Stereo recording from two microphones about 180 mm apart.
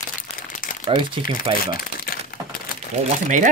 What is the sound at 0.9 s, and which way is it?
Speech, 30° right (ahead or behind).